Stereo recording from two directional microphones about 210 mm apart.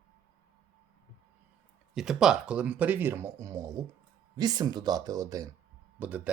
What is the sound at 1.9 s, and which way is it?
Speech, centre (ahead or behind).